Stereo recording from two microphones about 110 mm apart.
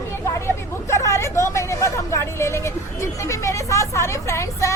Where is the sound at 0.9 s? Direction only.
25° left (ahead or behind).